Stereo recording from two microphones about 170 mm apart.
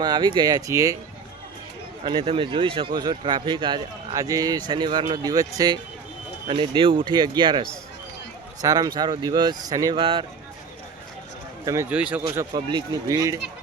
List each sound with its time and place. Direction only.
0.0 s speech: 25° right (ahead or behind)
2.0 s speech: 30° right (ahead or behind)
8.6 s speech: 20° right (ahead or behind)
11.6 s speech: 15° right (ahead or behind)
12.3 s speech: 20° right (ahead or behind)